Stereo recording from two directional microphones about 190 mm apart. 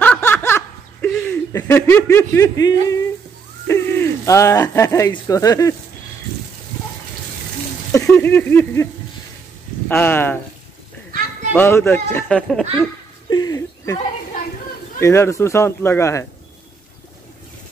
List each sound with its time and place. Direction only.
0.0 s snicker: 10° left (ahead or behind)
3.6 s speech: 15° left (ahead or behind)
7.9 s speech: 10° left (ahead or behind)
9.8 s speech: 10° left (ahead or behind)
11.5 s speech: 10° left (ahead or behind)
13.3 s a sound: 20° left (ahead or behind)
15.0 s speech: 15° left (ahead or behind)